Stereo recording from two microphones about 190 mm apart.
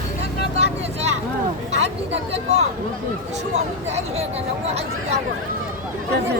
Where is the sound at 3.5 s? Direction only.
35° right (ahead or behind).